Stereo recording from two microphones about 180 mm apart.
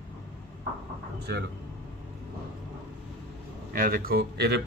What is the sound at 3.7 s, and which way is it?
Speech, 55° right (ahead or behind).